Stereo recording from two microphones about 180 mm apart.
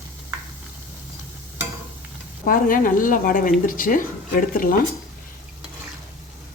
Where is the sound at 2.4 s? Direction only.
50° left (ahead or behind).